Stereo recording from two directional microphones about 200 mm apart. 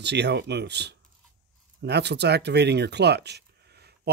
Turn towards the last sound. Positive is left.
turn(degrees=-55)  # may be behind; listen again after turning